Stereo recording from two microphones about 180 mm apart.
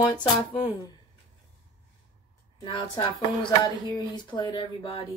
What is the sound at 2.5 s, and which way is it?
Speech, 25° left (ahead or behind).